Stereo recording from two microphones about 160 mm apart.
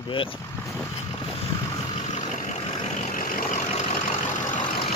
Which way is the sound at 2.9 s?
55° left (ahead or behind).